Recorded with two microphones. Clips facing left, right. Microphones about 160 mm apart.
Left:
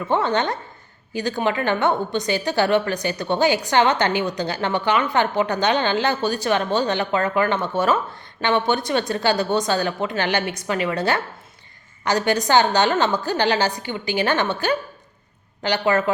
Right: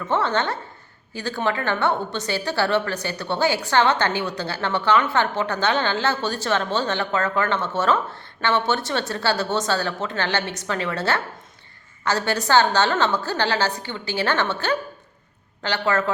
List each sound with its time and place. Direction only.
0.0 s a woman's voice: 15° left (ahead or behind)